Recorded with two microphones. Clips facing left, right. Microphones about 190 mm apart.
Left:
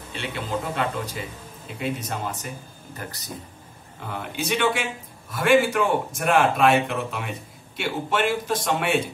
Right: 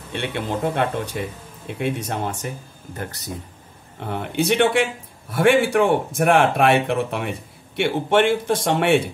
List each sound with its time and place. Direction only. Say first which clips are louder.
0.1 s speech: right 4 dB; 65° right (ahead or behind)
4.0 s speech: right 7 dB; 60° right (ahead or behind)